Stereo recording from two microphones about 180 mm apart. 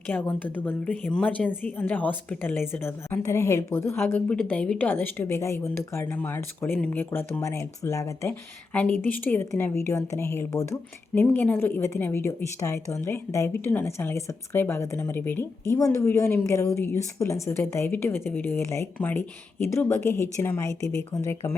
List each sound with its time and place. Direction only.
0.1 s a woman's voice: 10° left (ahead or behind)